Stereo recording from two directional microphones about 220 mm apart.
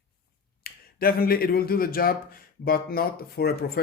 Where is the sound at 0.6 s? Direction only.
40° left (ahead or behind).